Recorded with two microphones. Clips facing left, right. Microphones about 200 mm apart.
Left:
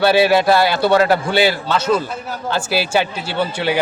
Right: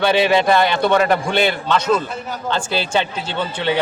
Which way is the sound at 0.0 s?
5° left (ahead or behind).